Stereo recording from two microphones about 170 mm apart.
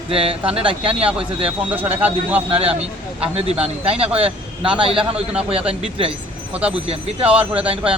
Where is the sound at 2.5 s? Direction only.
35° right (ahead or behind).